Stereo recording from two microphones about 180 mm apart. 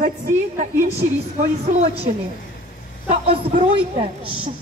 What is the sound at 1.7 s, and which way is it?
Speech, 40° right (ahead or behind).